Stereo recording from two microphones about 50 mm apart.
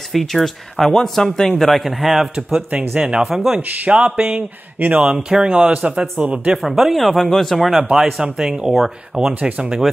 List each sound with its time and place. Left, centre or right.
0.1 s speech: centre
3.0 s speech: centre
3.3 s speech: centre
3.8 s speech: right
4.4 s speech: right
4.9 s speech: right
6.1 s speech: right
6.6 s speech: centre
9.3 s speech: right